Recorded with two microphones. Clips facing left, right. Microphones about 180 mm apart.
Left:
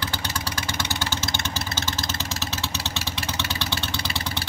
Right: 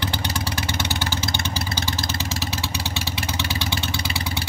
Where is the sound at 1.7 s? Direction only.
15° right (ahead or behind).